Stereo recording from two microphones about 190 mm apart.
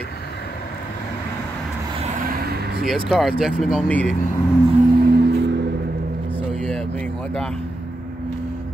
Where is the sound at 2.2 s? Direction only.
55° right (ahead or behind).